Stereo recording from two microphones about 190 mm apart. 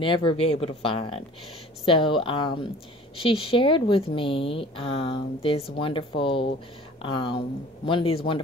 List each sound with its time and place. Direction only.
0.0 s speech: 25° left (ahead or behind)